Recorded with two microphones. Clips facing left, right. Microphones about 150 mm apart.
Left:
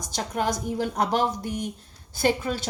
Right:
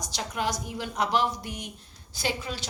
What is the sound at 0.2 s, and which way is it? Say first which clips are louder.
A woman's voice: left 4 dB; 45° left (ahead or behind).